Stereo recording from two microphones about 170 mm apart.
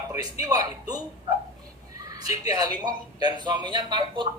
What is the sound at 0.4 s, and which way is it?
A woman's voice, 20° right (ahead or behind).